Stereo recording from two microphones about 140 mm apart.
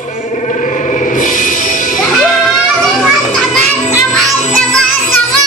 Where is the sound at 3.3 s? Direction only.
5° left (ahead or behind).